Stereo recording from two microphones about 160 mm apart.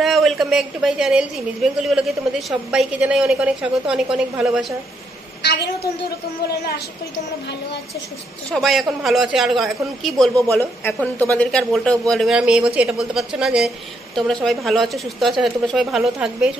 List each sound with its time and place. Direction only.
0.0 s a woman's voice: centre (ahead or behind)
5.4 s a woman's voice: 90° left
8.5 s a man's voice: centre (ahead or behind)
10.6 s a woman's voice: 10° left (ahead or behind); by 16.5 s 5° right (ahead or behind)